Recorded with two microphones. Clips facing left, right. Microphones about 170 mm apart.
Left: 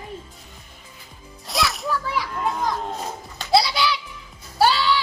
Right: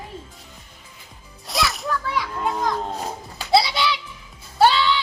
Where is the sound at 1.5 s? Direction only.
Centre (ahead or behind).